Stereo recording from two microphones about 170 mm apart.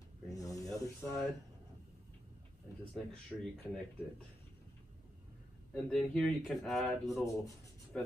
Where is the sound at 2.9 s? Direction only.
Centre (ahead or behind).